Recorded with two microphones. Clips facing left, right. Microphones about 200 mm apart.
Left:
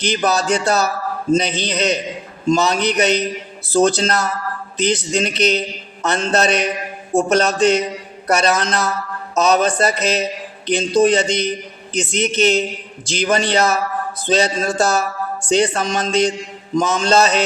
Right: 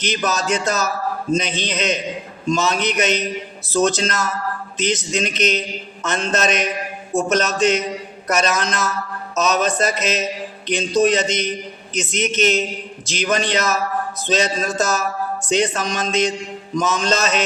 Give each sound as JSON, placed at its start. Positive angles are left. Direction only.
{"t": 0.0, "sound": "speech", "side_deg": 35}